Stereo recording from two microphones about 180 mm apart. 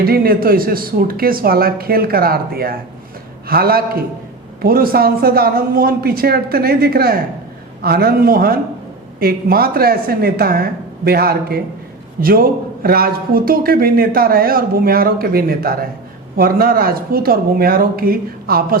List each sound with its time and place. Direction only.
0.0 s a man's voice: 55° right (ahead or behind)